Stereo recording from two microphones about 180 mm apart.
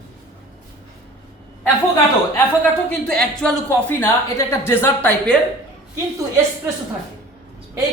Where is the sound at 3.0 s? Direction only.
5° left (ahead or behind).